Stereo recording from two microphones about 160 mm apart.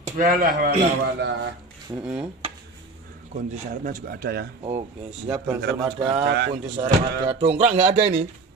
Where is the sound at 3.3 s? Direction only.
50° right (ahead or behind); by 4.4 s 80° right.